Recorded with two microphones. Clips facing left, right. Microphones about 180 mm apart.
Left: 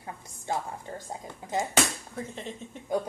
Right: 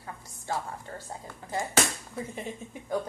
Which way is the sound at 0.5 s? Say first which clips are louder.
Left 1 dB; 15° left (ahead or behind).